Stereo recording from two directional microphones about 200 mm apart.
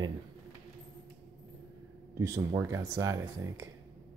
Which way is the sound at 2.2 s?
15° right (ahead or behind).